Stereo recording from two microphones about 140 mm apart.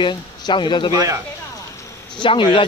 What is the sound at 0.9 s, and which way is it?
Speech, 25° right (ahead or behind).